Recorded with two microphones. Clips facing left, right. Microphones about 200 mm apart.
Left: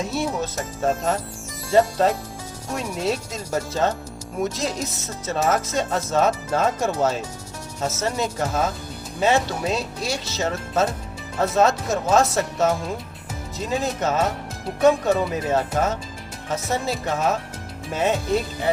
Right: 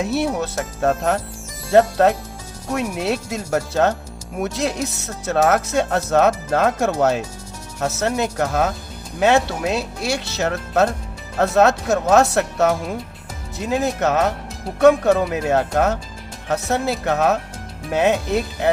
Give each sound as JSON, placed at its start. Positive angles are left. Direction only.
{"t": 0.0, "sound": "speech", "side_deg": -70}
{"t": 2.7, "sound": "speech", "side_deg": -65}